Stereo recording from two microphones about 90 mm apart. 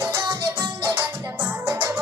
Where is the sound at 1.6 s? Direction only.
25° right (ahead or behind).